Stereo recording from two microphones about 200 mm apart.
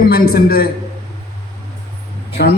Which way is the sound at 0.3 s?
50° left (ahead or behind).